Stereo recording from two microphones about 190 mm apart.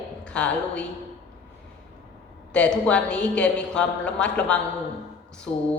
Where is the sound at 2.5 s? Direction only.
5° left (ahead or behind).